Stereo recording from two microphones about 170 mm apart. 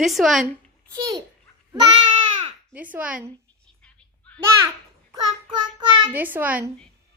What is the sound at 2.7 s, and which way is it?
Speech, 10° right (ahead or behind).